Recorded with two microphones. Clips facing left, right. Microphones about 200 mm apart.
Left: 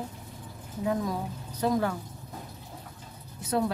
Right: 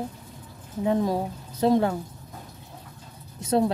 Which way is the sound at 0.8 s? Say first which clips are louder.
Right 6 dB; 25° right (ahead or behind).